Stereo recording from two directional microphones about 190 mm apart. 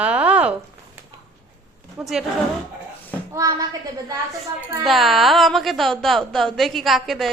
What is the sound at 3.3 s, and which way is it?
Speech, 15° right (ahead or behind).